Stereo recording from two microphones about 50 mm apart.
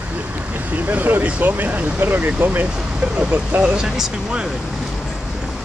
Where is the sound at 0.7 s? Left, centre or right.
Right.